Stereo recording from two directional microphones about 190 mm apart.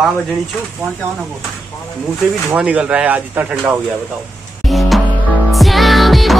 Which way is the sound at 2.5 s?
5° right (ahead or behind).